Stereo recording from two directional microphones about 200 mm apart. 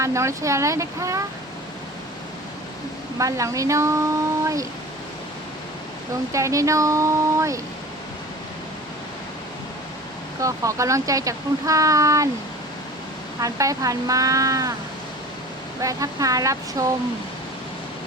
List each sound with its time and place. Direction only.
0.0 s speech: 15° right (ahead or behind)
3.2 s speech: 15° right (ahead or behind)
6.3 s speech: 15° right (ahead or behind)
10.4 s speech: 15° right (ahead or behind)
13.4 s speech: 15° right (ahead or behind)
15.8 s speech: 15° right (ahead or behind)